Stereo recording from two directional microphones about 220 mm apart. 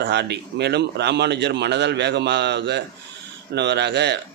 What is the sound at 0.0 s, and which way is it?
A man's voice, 50° right (ahead or behind).